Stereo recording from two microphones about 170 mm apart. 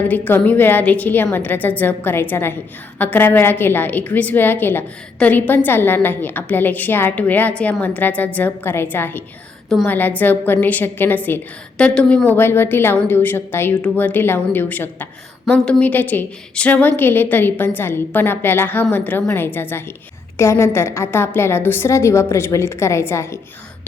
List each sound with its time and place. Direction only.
0.1 s a woman's voice: 10° left (ahead or behind)